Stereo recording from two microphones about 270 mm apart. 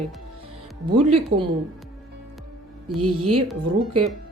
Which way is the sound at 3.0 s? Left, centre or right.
Right.